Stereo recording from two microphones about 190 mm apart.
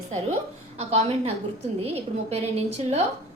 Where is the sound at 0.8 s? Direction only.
30° right (ahead or behind).